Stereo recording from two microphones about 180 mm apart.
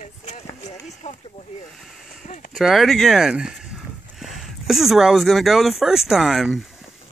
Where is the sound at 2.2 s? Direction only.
45° left (ahead or behind).